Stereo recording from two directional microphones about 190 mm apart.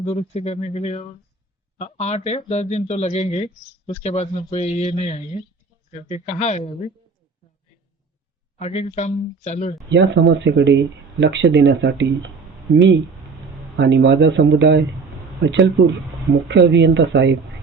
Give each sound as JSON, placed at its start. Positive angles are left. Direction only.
{"t": 0.0, "sound": "speech", "side_deg": 35}
{"t": 8.5, "sound": "speech", "side_deg": 35}
{"t": 9.9, "sound": "speech", "side_deg": -70}